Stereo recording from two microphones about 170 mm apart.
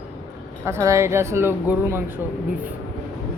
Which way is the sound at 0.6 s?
15° right (ahead or behind).